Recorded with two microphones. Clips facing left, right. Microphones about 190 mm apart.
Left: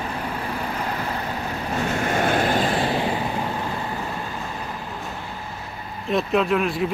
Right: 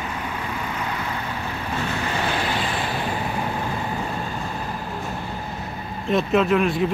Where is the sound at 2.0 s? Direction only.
50° left (ahead or behind).